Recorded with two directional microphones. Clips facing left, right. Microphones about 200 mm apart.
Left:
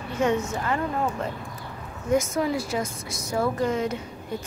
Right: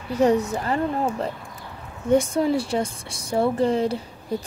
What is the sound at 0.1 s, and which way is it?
Speech, 35° right (ahead or behind).